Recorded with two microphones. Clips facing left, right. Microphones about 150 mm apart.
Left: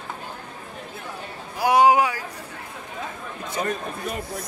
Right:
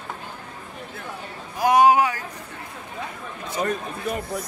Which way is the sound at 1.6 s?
10° left (ahead or behind).